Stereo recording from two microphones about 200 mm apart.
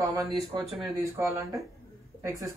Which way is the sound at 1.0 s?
15° right (ahead or behind).